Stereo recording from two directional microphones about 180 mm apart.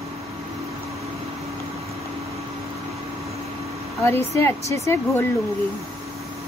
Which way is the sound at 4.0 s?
15° left (ahead or behind).